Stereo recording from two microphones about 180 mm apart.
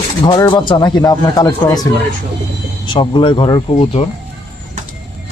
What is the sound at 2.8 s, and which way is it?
Speech, 25° left (ahead or behind).